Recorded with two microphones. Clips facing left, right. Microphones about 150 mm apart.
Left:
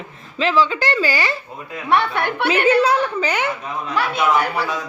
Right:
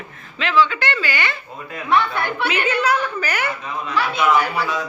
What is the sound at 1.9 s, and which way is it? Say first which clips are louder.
Speech: left 1 dB; 65° left (ahead or behind).